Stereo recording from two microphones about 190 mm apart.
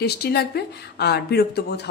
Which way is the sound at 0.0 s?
55° left (ahead or behind).